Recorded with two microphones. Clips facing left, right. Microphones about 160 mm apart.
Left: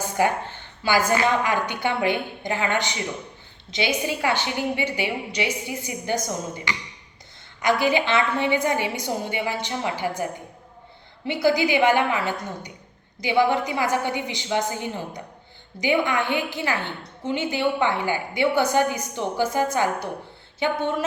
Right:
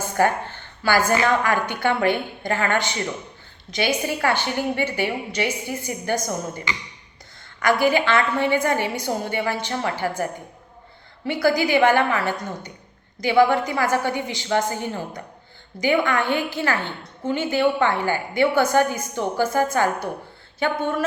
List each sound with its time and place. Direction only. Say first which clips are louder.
0.0 s a sound: right 2 dB; 15° left (ahead or behind)
1.5 s a woman's voice: right 3 dB; 15° left (ahead or behind)
11.3 s a woman's voice: right 1 dB; 20° left (ahead or behind)